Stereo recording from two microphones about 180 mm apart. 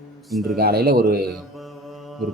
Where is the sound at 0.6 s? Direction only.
60° right (ahead or behind).